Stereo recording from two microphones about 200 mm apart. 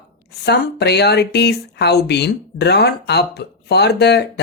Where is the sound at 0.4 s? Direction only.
55° left (ahead or behind).